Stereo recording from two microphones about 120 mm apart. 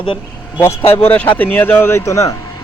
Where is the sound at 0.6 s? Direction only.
20° left (ahead or behind).